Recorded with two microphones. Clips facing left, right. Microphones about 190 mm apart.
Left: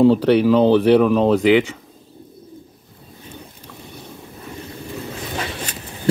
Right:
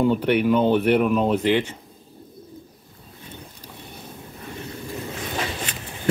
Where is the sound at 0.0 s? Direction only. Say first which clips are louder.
Left 6 dB; 85° left.